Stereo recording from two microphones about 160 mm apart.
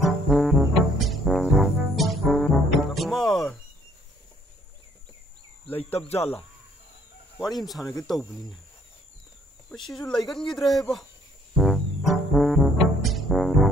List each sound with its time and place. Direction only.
0.0 s music: centre (ahead or behind)
5.7 s cricket: 10° left (ahead or behind)
5.9 s speech: 40° left (ahead or behind)
7.3 s speech: centre (ahead or behind)
9.7 s speech: centre (ahead or behind)
11.5 s music: centre (ahead or behind)